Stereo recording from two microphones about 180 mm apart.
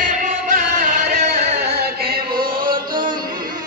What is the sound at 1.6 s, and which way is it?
Music, 60° right (ahead or behind).